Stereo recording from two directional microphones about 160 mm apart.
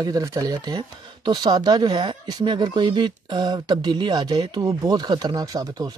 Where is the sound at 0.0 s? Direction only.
20° right (ahead or behind).